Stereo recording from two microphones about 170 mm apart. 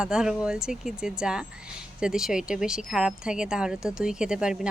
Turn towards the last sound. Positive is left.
turn(degrees=-5)  # may be behind; listen again after turning